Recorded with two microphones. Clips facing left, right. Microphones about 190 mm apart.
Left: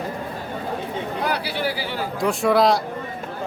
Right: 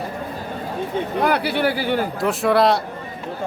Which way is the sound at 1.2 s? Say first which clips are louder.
Right 6 dB; 55° right (ahead or behind).